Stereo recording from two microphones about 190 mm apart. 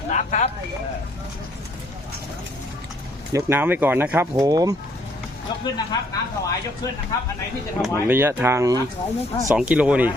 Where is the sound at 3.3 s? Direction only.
15° right (ahead or behind).